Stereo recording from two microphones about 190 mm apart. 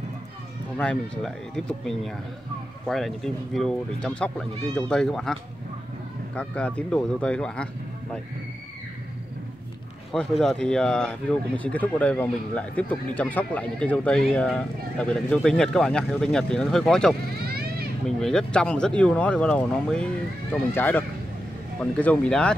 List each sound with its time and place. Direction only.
0.7 s speech: 5° left (ahead or behind)
10.1 s speech: 5° left (ahead or behind)
17.5 s children playing: 55° right (ahead or behind)
18.0 s speech: 5° left (ahead or behind)